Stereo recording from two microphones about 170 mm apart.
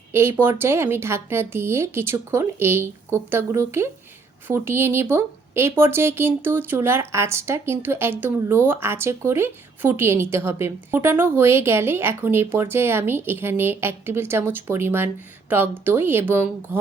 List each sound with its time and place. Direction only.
0.1 s speech: 15° right (ahead or behind)